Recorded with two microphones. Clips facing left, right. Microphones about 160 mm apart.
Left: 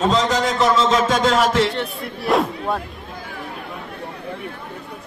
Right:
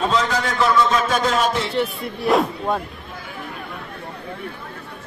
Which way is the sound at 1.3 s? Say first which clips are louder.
Left 4 dB; 90° left.